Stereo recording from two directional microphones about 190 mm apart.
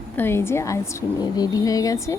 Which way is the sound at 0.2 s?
10° left (ahead or behind).